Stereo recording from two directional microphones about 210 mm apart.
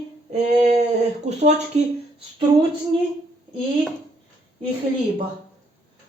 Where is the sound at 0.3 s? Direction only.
35° right (ahead or behind).